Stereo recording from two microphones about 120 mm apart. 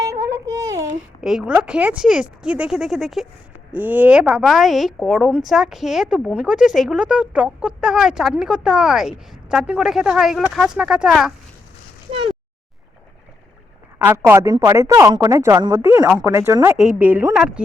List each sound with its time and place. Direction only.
0.0 s a sound: 25° right (ahead or behind)
1.2 s a woman's voice: 5° right (ahead or behind)
3.8 s a woman's voice: 15° right (ahead or behind)
14.0 s speech: 20° right (ahead or behind)
16.7 s a woman's voice: 10° right (ahead or behind)